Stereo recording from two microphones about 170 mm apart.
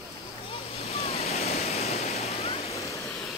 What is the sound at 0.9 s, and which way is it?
Waves, 35° left (ahead or behind).